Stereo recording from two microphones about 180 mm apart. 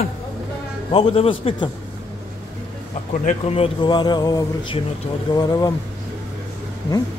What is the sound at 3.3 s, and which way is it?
Speech, 35° left (ahead or behind).